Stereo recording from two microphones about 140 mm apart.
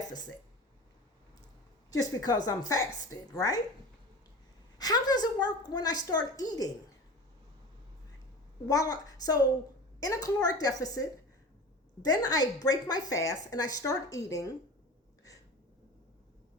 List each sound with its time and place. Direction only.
1.9 s a woman's voice: 25° left (ahead or behind)
4.8 s a woman's voice: 30° left (ahead or behind)
8.6 s a woman's voice: 25° left (ahead or behind)
12.0 s a woman's voice: 25° left (ahead or behind)